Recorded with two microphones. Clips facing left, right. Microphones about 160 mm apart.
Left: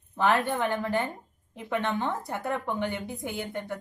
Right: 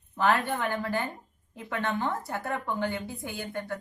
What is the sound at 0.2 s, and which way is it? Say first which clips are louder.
A woman's voice: left 1 dB; 20° left (ahead or behind).